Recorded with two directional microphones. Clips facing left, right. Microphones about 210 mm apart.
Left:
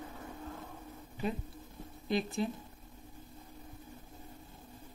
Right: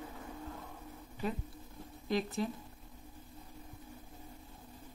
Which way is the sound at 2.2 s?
15° left (ahead or behind).